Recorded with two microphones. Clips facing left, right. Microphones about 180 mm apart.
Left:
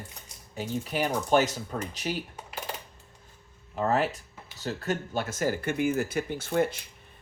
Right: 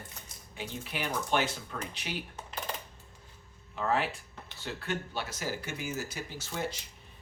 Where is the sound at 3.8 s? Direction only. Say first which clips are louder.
Left 4 dB; 45° left (ahead or behind).